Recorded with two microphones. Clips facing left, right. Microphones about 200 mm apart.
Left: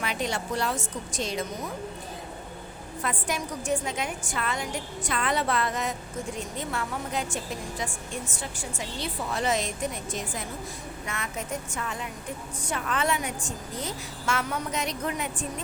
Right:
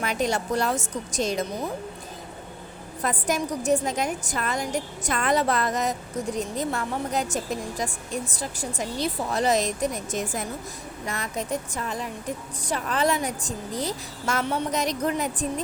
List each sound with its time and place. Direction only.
0.0 s a woman's voice: 45° right (ahead or behind)
3.0 s a woman's voice: 40° right (ahead or behind)